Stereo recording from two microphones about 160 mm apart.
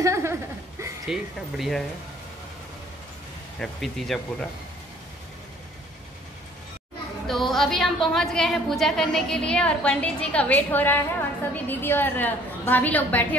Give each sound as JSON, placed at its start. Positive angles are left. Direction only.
{"t": 0.0, "sound": "a sound", "side_deg": -15}
{"t": 1.0, "sound": "a woman's voice", "side_deg": 0}
{"t": 3.5, "sound": "a woman's voice", "side_deg": 0}
{"t": 7.2, "sound": "a woman's voice", "side_deg": 0}